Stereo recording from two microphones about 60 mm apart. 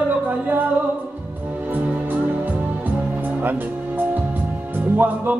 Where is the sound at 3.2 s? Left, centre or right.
Right.